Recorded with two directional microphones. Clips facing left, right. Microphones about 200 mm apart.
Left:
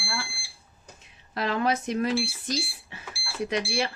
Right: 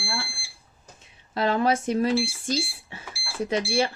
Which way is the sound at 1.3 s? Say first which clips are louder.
Right 3 dB; 30° right (ahead or behind).